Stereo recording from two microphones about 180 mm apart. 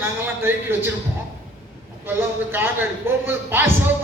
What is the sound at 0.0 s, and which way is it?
Speech, 10° right (ahead or behind).